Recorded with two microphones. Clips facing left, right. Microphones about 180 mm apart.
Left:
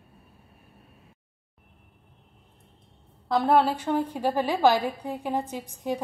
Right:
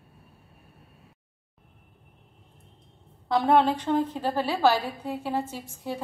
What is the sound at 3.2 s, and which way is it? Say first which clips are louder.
A woman's voice: even; centre (ahead or behind).